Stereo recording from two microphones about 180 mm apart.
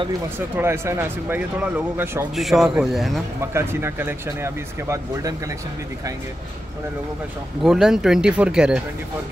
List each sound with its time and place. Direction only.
0.6 s speech: 15° right (ahead or behind)
2.3 s speech: centre (ahead or behind)
3.3 s speech: 15° right (ahead or behind)
7.6 s speech: centre (ahead or behind)